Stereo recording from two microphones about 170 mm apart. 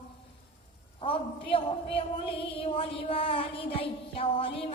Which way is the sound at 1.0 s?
30° left (ahead or behind).